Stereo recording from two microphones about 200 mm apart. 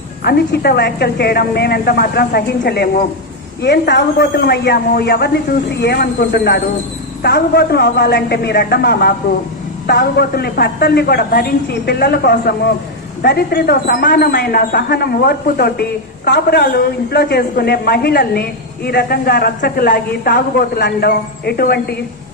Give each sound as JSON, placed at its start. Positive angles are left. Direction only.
{"t": 0.3, "sound": "speech", "side_deg": 55}